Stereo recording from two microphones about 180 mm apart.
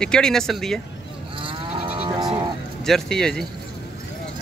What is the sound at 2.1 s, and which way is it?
Sheep, 25° right (ahead or behind).